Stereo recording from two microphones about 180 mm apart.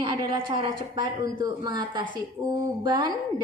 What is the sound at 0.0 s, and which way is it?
A woman's voice, 20° right (ahead or behind).